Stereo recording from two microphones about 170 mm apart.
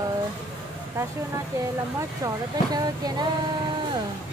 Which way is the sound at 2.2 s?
20° right (ahead or behind).